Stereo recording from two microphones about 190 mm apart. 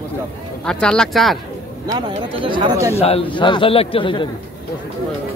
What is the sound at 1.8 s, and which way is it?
Speech, 25° right (ahead or behind).